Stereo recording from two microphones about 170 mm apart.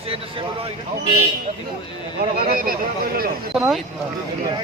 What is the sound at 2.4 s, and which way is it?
Speech, 60° right (ahead or behind).